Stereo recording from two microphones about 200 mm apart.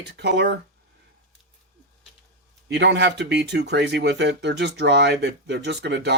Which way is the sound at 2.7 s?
60° right (ahead or behind).